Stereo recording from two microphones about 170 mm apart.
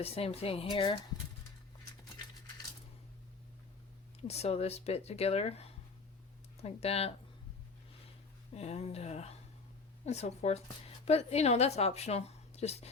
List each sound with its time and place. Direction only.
0.0 s a woman's voice: 35° left (ahead or behind)
4.2 s a woman's voice: 40° left (ahead or behind)
8.5 s a woman's voice: 40° left (ahead or behind)